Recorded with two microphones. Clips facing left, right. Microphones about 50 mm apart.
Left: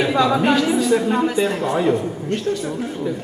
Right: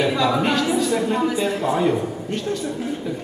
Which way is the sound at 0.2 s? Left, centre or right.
Centre.